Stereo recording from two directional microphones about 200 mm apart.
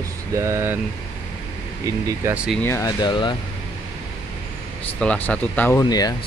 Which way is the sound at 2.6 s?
15° left (ahead or behind).